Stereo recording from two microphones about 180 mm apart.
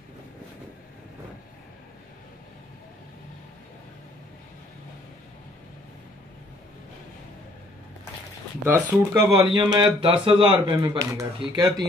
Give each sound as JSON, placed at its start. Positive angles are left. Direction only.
{"t": 8.6, "sound": "speech", "side_deg": -15}
{"t": 9.3, "sound": "speech", "side_deg": -25}